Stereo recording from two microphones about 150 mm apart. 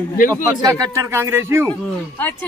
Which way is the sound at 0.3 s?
25° right (ahead or behind).